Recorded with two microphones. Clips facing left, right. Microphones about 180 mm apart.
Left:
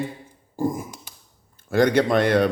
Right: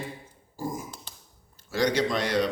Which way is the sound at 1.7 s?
55° left (ahead or behind).